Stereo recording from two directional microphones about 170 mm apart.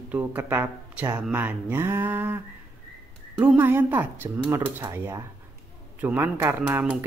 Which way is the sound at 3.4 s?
10° right (ahead or behind).